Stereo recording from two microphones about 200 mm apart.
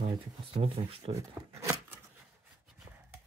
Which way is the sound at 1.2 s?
15° right (ahead or behind).